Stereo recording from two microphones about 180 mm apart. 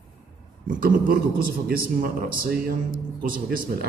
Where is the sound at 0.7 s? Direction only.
50° right (ahead or behind).